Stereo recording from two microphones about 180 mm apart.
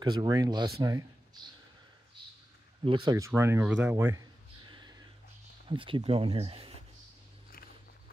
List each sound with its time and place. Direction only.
0.0 s speech: 25° right (ahead or behind)
2.8 s speech: 25° right (ahead or behind)
4.6 s a sound: 25° right (ahead or behind)
5.7 s speech: 30° right (ahead or behind)